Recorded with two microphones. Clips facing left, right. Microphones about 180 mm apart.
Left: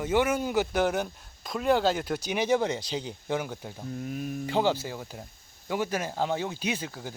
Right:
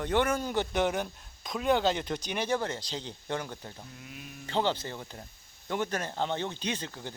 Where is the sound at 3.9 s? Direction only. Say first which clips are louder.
Left 13 dB; 45° left (ahead or behind).